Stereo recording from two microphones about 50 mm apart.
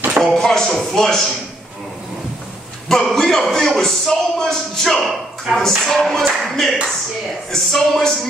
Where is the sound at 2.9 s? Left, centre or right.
Centre.